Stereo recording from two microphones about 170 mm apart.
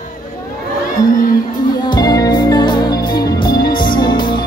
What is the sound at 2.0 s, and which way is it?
Music, 25° left (ahead or behind).